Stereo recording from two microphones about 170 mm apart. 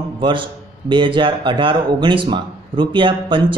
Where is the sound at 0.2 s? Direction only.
30° right (ahead or behind).